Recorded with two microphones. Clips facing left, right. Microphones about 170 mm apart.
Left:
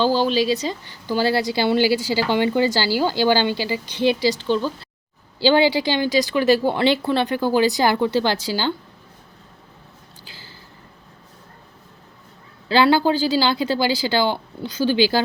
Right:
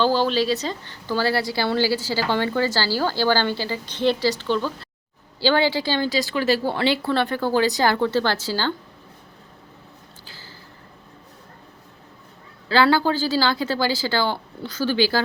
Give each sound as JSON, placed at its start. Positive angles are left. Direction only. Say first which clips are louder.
{"t": 0.0, "sound": "a woman's voice", "louder": "left 1 dB", "side_deg": 15}
{"t": 12.6, "sound": "a woman's voice", "louder": "left 2 dB", "side_deg": 20}